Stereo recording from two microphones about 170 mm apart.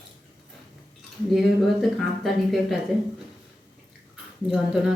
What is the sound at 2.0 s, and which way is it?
Speech, centre (ahead or behind).